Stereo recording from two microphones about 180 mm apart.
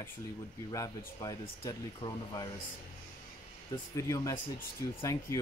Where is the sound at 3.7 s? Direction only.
15° left (ahead or behind).